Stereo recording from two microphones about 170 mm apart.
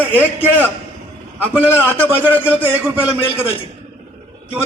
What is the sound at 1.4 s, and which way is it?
A man's voice, 10° right (ahead or behind).